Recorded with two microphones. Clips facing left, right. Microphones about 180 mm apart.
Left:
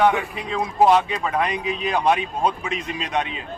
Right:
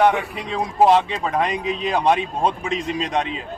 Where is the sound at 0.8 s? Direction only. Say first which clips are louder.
Right 1 dB; 25° right (ahead or behind).